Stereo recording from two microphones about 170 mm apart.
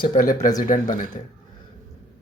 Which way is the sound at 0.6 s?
45° left (ahead or behind).